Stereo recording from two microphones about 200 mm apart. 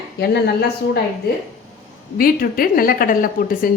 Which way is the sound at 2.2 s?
45° left (ahead or behind).